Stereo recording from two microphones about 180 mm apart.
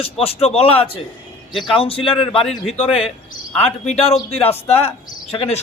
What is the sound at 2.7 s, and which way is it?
Speech, 35° left (ahead or behind).